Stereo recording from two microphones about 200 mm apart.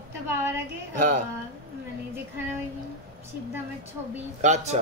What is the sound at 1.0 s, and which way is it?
Speech, 40° right (ahead or behind).